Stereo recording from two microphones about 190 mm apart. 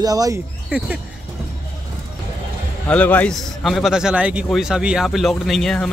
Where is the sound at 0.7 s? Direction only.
5° right (ahead or behind).